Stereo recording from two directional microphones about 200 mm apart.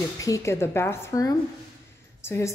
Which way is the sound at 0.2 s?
15° left (ahead or behind).